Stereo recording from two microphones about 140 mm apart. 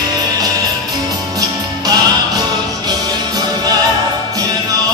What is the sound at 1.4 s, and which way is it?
Music, 25° right (ahead or behind).